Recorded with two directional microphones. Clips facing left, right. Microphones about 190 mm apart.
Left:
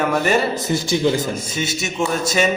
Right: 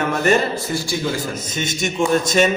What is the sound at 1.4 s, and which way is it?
A man's voice, 10° left (ahead or behind).